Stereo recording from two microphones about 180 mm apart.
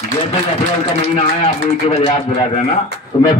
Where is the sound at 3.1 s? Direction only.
25° left (ahead or behind).